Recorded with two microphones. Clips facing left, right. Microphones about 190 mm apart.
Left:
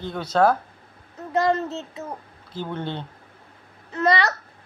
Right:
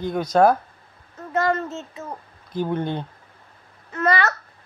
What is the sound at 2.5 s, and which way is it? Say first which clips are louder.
Speech: right 5 dB; 15° right (ahead or behind).